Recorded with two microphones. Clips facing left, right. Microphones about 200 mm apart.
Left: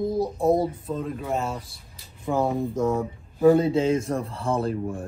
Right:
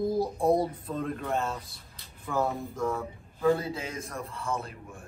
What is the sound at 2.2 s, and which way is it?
Speech, 25° left (ahead or behind).